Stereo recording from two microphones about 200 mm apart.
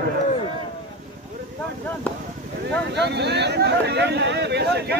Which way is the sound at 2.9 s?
60° right (ahead or behind).